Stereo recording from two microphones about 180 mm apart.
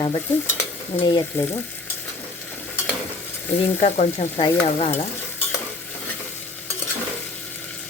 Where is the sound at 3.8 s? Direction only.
35° left (ahead or behind).